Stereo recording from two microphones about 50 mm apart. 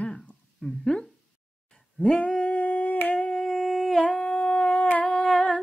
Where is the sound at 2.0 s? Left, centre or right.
Left.